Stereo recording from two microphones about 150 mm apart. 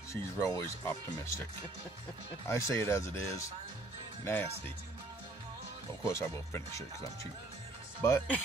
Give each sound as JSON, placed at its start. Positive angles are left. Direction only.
{"t": 0.1, "sound": "speech", "side_deg": 20}
{"t": 2.4, "sound": "speech", "side_deg": 20}
{"t": 6.0, "sound": "speech", "side_deg": 15}
{"t": 8.0, "sound": "speech", "side_deg": 15}